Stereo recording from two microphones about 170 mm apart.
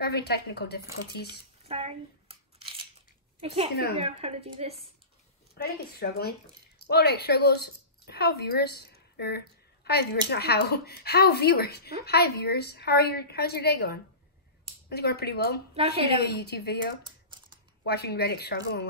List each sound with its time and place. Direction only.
0.0 s a woman's voice: 70° left (ahead or behind)
1.6 s scissors: 40° right (ahead or behind)
3.3 s a woman's voice: 35° right (ahead or behind)
5.5 s a woman's voice: 65° left (ahead or behind)
15.7 s a woman's voice: 35° right (ahead or behind)
16.2 s a woman's voice: 75° left (ahead or behind)
17.0 s typing: 25° right (ahead or behind)
17.8 s a woman's voice: 70° left (ahead or behind)